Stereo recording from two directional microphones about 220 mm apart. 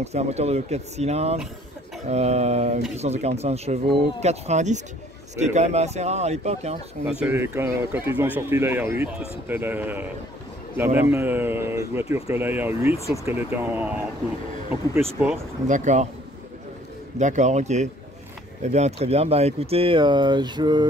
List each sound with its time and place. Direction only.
0.0 s speech: 30° right (ahead or behind)
7.1 s speech: 5° right (ahead or behind)
15.0 s speech: 10° right (ahead or behind)
15.6 s speech: 35° right (ahead or behind)
17.2 s speech: 35° right (ahead or behind)